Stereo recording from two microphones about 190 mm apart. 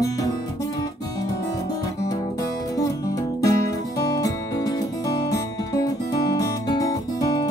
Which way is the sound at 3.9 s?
20° left (ahead or behind).